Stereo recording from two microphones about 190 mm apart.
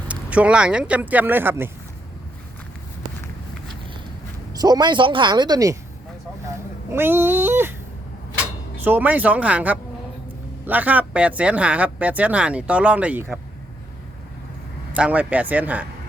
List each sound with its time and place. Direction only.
0.1 s speech: 5° right (ahead or behind)
4.5 s speech: 20° right (ahead or behind)
6.9 s speech: 10° right (ahead or behind)
8.8 s speech: 10° right (ahead or behind)
14.9 s speech: 5° right (ahead or behind)